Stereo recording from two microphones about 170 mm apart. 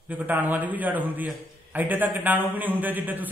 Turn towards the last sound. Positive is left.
turn(degrees=-10)  # may be behind; listen again after turning